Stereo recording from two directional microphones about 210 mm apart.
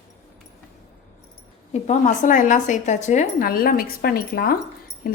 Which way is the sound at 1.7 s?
30° left (ahead or behind).